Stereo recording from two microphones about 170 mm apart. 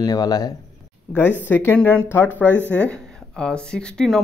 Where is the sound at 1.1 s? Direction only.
5° left (ahead or behind).